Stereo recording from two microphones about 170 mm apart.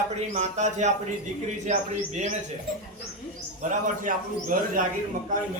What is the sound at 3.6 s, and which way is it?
A man's voice, 45° right (ahead or behind).